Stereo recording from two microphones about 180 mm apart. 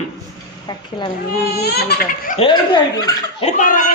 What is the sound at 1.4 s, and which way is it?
Speech, 65° left (ahead or behind).